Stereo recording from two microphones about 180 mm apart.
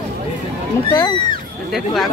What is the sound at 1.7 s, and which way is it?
Speech, centre (ahead or behind).